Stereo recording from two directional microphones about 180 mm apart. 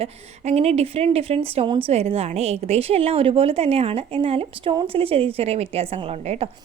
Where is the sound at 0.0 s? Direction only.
35° right (ahead or behind).